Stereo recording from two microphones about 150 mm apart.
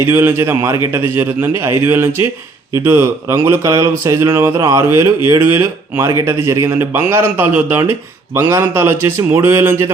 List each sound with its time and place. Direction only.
0.0 s speech: 15° right (ahead or behind)